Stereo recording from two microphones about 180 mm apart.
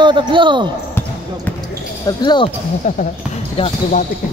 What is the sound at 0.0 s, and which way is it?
Speech, 25° right (ahead or behind).